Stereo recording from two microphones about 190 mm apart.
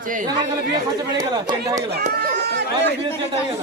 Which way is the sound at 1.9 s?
55° right (ahead or behind).